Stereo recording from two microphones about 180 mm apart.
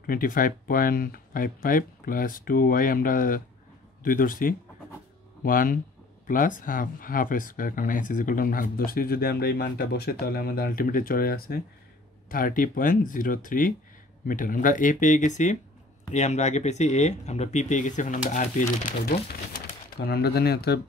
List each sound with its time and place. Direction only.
0.0 s speech: 50° left (ahead or behind)
20.0 s speech: 60° left (ahead or behind)